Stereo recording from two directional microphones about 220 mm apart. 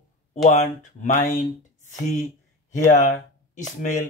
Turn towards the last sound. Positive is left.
turn(degrees=35)  # may be behind; listen again after turning